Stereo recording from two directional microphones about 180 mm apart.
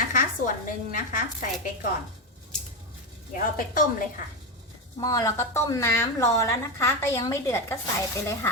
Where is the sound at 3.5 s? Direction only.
50° left (ahead or behind).